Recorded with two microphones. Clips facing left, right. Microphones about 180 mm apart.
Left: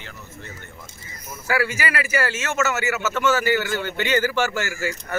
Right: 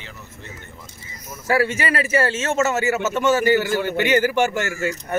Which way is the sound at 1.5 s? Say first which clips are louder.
Right 4 dB; 25° right (ahead or behind).